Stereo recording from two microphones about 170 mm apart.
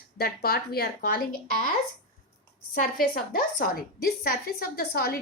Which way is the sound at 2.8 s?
55° left (ahead or behind).